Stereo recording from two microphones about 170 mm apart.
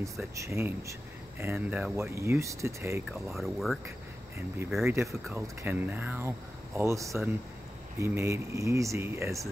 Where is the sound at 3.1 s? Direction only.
Centre (ahead or behind).